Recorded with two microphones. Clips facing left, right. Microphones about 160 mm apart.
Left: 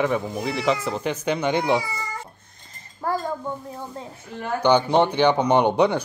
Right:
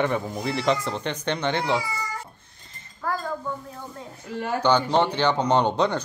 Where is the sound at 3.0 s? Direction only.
30° left (ahead or behind).